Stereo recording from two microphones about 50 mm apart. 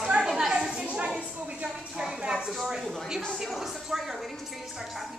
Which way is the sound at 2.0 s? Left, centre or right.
Centre.